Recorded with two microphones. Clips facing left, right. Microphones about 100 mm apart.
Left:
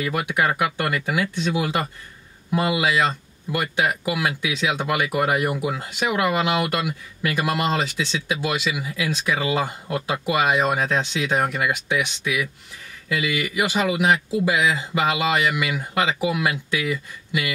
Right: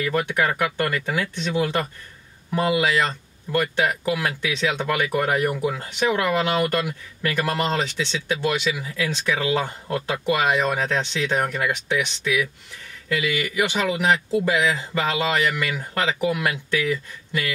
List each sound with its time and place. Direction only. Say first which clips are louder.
0.0 s speech: even; 5° left (ahead or behind)
13.1 s speech: even; 5° left (ahead or behind)